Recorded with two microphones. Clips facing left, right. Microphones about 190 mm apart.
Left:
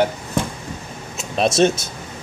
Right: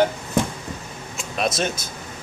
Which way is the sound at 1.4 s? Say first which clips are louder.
Left 8 dB; 25° left (ahead or behind).